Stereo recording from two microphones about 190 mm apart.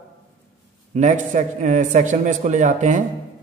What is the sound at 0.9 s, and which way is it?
A man's voice, 40° right (ahead or behind).